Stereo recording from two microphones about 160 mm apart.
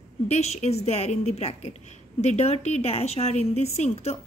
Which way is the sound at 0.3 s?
45° left (ahead or behind).